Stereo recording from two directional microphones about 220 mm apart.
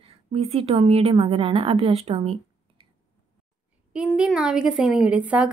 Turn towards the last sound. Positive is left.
turn(degrees=-5)  # may be behind; listen again after turning